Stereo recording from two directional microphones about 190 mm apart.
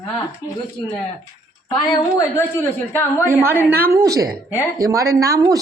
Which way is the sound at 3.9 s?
20° right (ahead or behind).